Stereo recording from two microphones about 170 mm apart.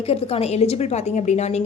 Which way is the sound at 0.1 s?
35° left (ahead or behind).